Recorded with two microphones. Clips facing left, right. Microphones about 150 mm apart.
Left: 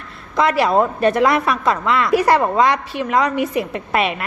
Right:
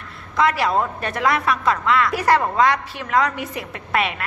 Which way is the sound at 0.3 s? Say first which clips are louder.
Left 4 dB; 25° left (ahead or behind).